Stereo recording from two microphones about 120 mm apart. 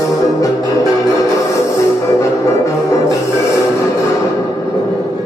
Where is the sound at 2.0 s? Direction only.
25° left (ahead or behind).